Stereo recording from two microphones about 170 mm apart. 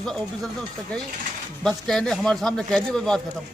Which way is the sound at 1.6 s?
5° left (ahead or behind).